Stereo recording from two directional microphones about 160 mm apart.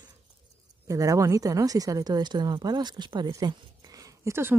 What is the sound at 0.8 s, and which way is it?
A woman's voice, 20° right (ahead or behind).